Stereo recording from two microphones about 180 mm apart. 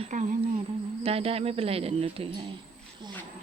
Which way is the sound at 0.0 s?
45° right (ahead or behind).